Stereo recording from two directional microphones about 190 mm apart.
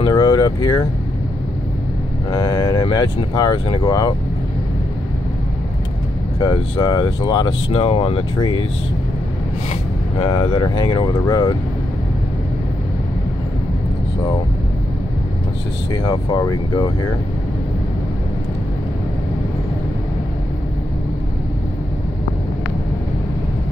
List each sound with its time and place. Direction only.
0.0 s vehicle: 20° left (ahead or behind)
2.3 s speech: 20° left (ahead or behind)
6.4 s speech: 20° left (ahead or behind)
10.2 s speech: 25° left (ahead or behind)
15.9 s speech: 20° left (ahead or behind)